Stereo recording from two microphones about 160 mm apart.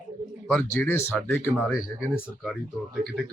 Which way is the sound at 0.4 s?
10° left (ahead or behind).